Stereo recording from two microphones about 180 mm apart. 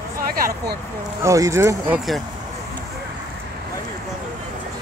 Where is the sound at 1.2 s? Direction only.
15° right (ahead or behind).